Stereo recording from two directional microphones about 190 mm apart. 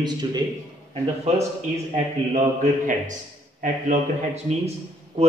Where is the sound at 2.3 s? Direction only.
40° right (ahead or behind).